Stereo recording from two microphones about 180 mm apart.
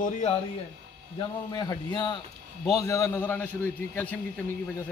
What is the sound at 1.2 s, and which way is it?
A man's voice, 20° left (ahead or behind).